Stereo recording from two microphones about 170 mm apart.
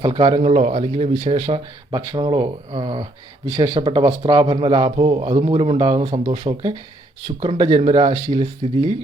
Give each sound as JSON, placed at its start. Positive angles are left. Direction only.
{"t": 0.0, "sound": "speech", "side_deg": -30}